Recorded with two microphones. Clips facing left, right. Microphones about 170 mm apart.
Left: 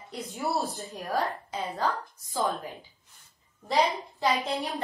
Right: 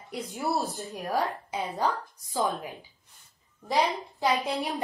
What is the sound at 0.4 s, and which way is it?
Speech, centre (ahead or behind).